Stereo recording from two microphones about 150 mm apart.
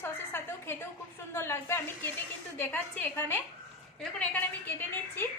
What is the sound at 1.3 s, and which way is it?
A woman's voice, 15° left (ahead or behind).